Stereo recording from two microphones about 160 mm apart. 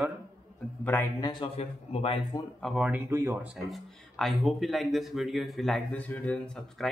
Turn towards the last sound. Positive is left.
turn(degrees=5)  # may be behind; listen again after turning